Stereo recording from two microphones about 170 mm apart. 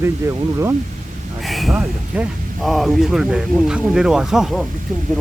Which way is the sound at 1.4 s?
Centre (ahead or behind).